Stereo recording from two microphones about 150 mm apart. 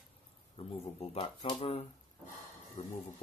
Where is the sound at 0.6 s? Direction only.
40° left (ahead or behind).